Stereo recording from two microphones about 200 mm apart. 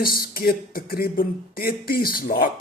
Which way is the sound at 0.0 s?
50° left (ahead or behind).